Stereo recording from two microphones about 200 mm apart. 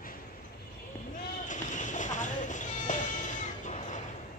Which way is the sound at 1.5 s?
40° left (ahead or behind).